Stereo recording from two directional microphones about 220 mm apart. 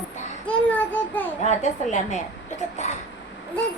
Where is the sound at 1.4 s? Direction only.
35° left (ahead or behind).